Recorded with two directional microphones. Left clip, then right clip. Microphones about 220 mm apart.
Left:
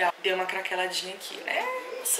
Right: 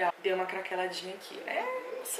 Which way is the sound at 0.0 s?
10° right (ahead or behind).